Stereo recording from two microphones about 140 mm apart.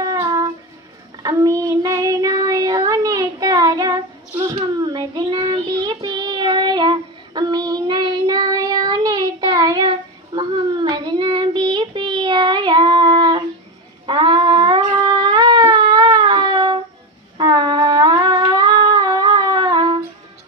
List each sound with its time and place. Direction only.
0.0 s music: 25° right (ahead or behind)
1.2 s child singing: 25° right (ahead or behind)
14.0 s a sound: 35° right (ahead or behind)